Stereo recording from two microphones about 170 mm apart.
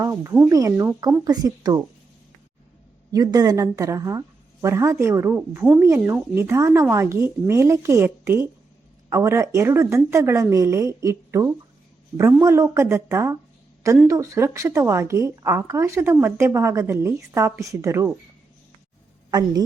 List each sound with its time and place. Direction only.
0.0 s speech: 20° right (ahead or behind)
3.1 s speech: 20° right (ahead or behind)
19.3 s speech: 20° right (ahead or behind)